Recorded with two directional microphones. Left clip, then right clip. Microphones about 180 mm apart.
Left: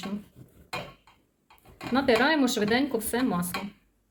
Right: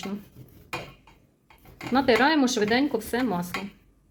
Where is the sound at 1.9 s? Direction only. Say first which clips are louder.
Right 2 dB; 40° right (ahead or behind).